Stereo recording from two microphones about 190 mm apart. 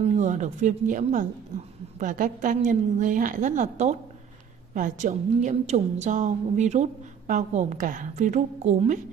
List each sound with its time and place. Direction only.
0.0 s a woman's voice: 35° right (ahead or behind)